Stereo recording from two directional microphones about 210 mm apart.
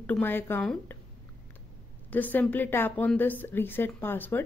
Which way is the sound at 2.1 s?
10° left (ahead or behind).